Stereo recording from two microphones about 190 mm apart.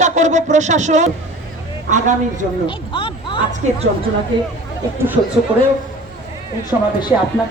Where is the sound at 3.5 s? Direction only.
35° right (ahead or behind).